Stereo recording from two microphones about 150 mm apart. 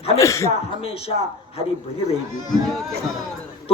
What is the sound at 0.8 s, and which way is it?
Speech, 40° left (ahead or behind).